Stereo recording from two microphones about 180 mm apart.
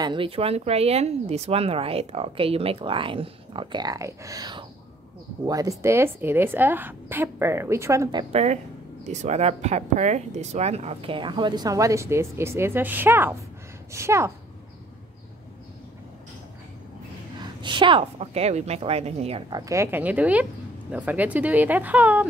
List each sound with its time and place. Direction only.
0.0 s a woman's voice: 25° right (ahead or behind)
8.3 s a woman's voice: 35° right (ahead or behind); by 14.3 s 15° right (ahead or behind)
17.4 s speech: 25° right (ahead or behind)
19.5 s a woman's voice: 15° right (ahead or behind)